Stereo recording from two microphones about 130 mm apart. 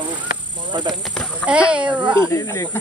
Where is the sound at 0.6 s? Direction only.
35° right (ahead or behind).